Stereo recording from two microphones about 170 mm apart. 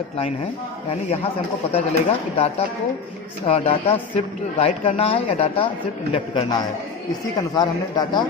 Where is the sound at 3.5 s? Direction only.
40° left (ahead or behind); by 8.2 s 25° left (ahead or behind).